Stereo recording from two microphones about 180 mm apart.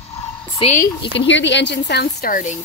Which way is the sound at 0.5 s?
35° left (ahead or behind).